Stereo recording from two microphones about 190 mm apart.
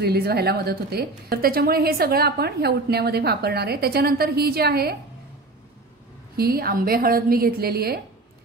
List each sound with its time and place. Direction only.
0.0 s a woman's voice: 55° right (ahead or behind)
6.3 s a woman's voice: 55° right (ahead or behind)